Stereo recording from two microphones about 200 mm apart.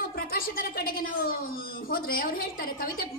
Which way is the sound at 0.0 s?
45° left (ahead or behind).